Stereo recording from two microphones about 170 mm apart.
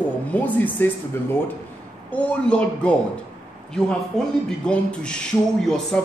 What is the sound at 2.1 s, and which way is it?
A woman's voice, 5° left (ahead or behind).